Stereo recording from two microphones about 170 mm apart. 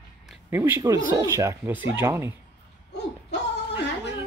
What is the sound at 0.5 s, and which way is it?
Speech, 15° right (ahead or behind).